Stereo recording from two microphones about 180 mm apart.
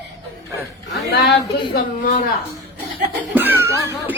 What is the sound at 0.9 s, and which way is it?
Speech, 60° left (ahead or behind).